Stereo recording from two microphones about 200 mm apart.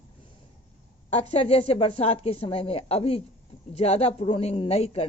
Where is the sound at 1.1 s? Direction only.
30° left (ahead or behind).